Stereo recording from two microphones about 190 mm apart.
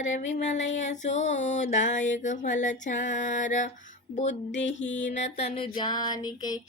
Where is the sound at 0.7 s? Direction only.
40° left (ahead or behind).